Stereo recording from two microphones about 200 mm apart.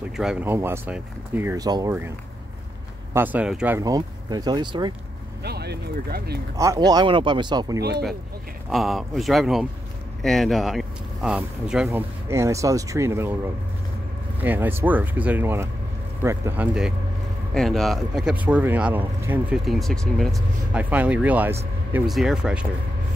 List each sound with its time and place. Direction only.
0.2 s speech: 5° right (ahead or behind); by 4.9 s 20° right (ahead or behind)
5.4 s speech: 55° right (ahead or behind)
6.5 s speech: 15° right (ahead or behind)
8.6 s speech: centre (ahead or behind)
14.4 s speech: 10° right (ahead or behind)
17.6 s speech: centre (ahead or behind)